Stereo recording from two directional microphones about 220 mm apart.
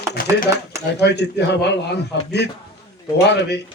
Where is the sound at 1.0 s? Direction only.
50° left (ahead or behind).